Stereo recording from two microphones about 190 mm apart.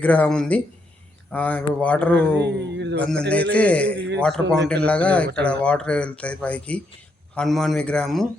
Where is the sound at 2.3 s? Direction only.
65° right (ahead or behind).